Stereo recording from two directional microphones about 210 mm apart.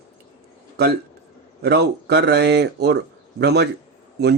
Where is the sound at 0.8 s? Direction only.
50° right (ahead or behind).